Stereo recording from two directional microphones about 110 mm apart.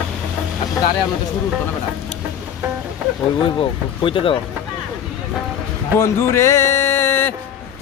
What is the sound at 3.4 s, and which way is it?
Speech, 55° left (ahead or behind).